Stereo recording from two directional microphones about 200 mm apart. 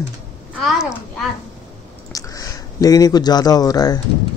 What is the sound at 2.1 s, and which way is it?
Speech, 15° left (ahead or behind).